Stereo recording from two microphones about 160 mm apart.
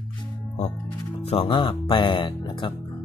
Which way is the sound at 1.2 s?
35° left (ahead or behind).